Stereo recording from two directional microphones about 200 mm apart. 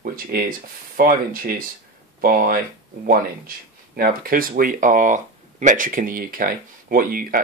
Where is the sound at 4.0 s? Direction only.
45° right (ahead or behind).